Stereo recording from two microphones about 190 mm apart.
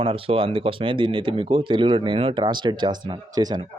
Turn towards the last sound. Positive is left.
turn(degrees=-20)  # may be behind; listen again after turning